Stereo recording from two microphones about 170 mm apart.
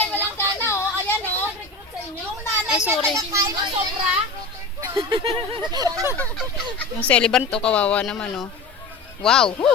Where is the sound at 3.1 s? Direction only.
20° right (ahead or behind).